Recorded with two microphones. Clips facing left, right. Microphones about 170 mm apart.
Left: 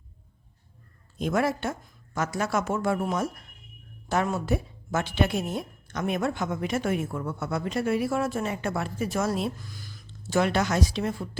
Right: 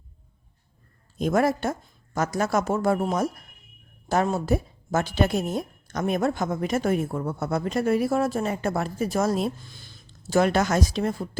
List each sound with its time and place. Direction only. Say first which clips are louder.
1.2 s a woman's voice: right 4 dB; 40° right (ahead or behind)
9.6 s a sound: left 4 dB; 25° right (ahead or behind)
10.1 s speech: right 3 dB; 40° right (ahead or behind)